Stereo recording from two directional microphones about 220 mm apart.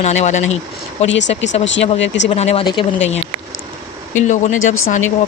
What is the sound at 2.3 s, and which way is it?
Speech, 30° left (ahead or behind).